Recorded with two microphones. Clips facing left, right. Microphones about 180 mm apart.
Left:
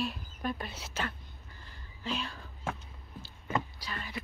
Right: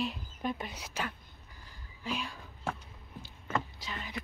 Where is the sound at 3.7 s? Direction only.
20° right (ahead or behind).